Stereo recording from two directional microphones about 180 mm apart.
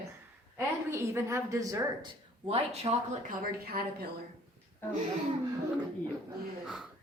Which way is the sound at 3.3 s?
55° right (ahead or behind).